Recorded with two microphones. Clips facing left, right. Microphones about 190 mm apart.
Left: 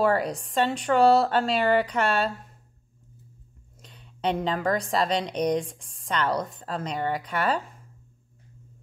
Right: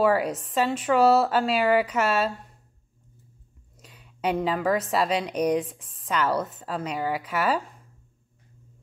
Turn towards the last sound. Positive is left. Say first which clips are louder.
# right 1 dB
turn(degrees=0)  # may be behind; listen again after turning